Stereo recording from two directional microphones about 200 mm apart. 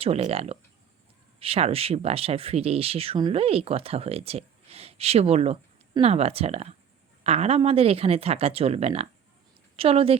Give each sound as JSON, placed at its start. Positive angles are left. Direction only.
{"t": 0.0, "sound": "speech", "side_deg": -30}